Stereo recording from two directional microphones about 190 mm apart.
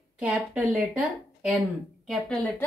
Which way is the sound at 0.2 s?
5° right (ahead or behind).